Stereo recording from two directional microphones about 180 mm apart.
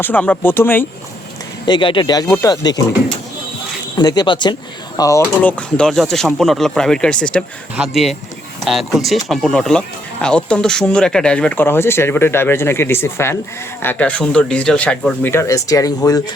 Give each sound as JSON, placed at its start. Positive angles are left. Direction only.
{"t": 0.0, "sound": "speech", "side_deg": 10}
{"t": 1.6, "sound": "speech", "side_deg": 25}
{"t": 3.9, "sound": "speech", "side_deg": 20}